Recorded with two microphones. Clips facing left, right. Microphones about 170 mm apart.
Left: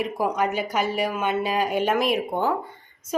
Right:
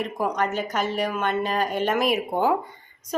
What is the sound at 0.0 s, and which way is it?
A woman's voice, 10° left (ahead or behind).